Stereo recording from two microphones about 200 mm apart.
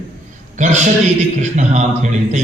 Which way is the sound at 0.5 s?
40° right (ahead or behind).